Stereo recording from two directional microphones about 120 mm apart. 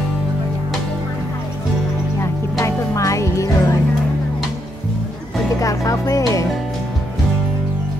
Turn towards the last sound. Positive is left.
turn(degrees=25)  # may be behind; listen again after turning